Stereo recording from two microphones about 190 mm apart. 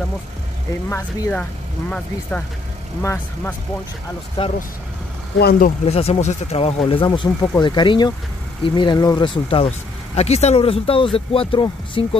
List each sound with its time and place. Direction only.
0.8 s speech: 15° left (ahead or behind)
3.0 s speech: 15° left (ahead or behind)
4.4 s speech: 25° left (ahead or behind)
5.4 s speech: 50° left (ahead or behind)
5.9 s speech: 30° left (ahead or behind)
7.1 s speech: 20° left (ahead or behind)